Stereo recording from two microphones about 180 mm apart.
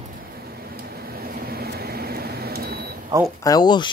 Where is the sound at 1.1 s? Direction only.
60° right (ahead or behind).